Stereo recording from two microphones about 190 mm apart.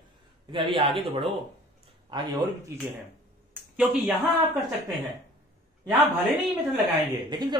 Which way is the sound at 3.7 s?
5° right (ahead or behind).